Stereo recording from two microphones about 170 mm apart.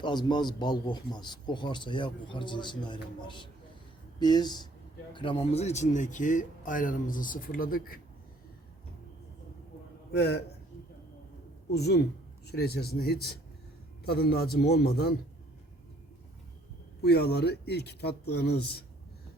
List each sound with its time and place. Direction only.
0.0 s a man's voice: 25° left (ahead or behind); by 7.9 s 55° left (ahead or behind)
10.1 s a man's voice: 75° left (ahead or behind)
11.7 s speech: 70° left (ahead or behind)
17.0 s speech: 70° left (ahead or behind)